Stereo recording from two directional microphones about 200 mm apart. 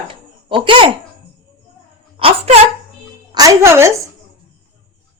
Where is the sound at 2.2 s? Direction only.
30° right (ahead or behind).